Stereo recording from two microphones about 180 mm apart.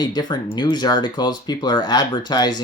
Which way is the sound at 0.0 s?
25° left (ahead or behind).